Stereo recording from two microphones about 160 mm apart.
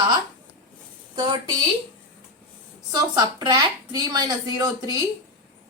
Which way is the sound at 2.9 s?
25° right (ahead or behind).